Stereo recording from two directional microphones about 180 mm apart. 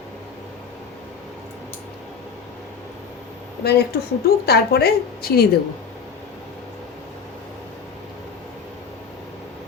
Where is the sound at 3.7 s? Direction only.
60° left (ahead or behind).